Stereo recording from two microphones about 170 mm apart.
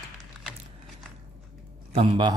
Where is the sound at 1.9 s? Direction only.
35° right (ahead or behind).